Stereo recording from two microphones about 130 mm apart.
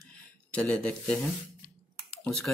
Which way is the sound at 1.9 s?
5° left (ahead or behind).